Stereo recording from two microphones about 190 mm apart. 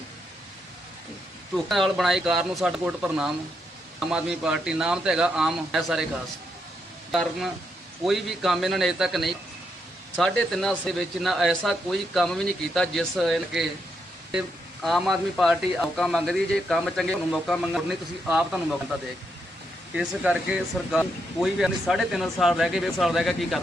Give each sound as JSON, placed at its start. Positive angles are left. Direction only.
{"t": 1.5, "sound": "speech", "side_deg": 0}
{"t": 7.1, "sound": "speech", "side_deg": 0}
{"t": 19.9, "sound": "speech", "side_deg": -5}